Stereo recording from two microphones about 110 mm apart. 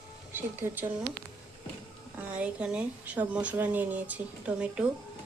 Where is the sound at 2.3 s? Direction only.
10° right (ahead or behind).